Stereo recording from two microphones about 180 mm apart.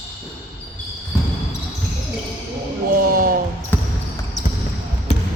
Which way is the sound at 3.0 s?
50° right (ahead or behind).